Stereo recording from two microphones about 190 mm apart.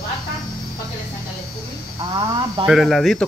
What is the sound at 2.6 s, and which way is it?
Speech, centre (ahead or behind).